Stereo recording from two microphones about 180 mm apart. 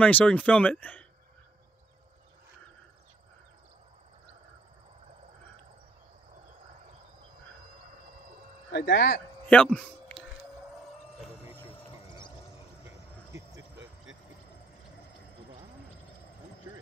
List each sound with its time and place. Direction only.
0.0 s speech: 10° left (ahead or behind)
8.7 s speech: 75° left (ahead or behind)
9.5 s speech: 5° left (ahead or behind)
12.8 s cricket: 15° right (ahead or behind)